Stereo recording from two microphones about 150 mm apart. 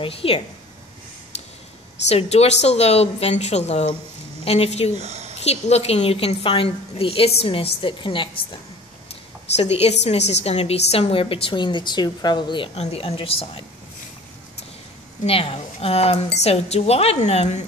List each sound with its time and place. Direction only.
0.0 s a woman's voice: 40° left (ahead or behind)
2.0 s speech: 45° left (ahead or behind)
4.9 s speech: 45° right (ahead or behind)
5.4 s a woman's voice: 45° left (ahead or behind)
9.6 s a woman's voice: 45° left (ahead or behind)
15.2 s speech: 40° left (ahead or behind)